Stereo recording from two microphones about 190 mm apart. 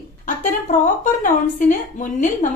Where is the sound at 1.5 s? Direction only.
40° left (ahead or behind).